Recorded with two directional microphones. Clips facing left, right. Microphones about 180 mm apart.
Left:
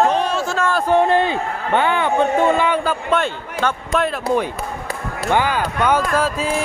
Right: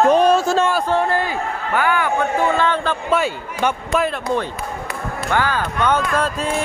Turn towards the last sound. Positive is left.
turn(degrees=5)  # may be behind; listen again after turning